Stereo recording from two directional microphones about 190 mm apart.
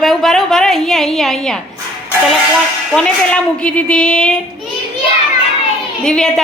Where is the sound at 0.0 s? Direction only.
Centre (ahead or behind).